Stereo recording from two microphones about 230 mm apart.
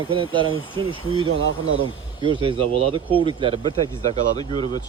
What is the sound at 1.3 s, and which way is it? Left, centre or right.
Speech, right.